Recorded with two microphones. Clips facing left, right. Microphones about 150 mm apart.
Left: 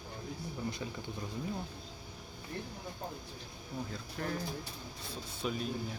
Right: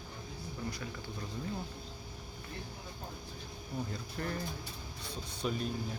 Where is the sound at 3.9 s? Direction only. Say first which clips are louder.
Even; centre (ahead or behind).